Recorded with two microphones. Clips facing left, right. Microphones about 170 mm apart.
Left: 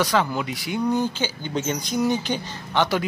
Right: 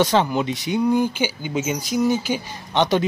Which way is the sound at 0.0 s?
25° right (ahead or behind).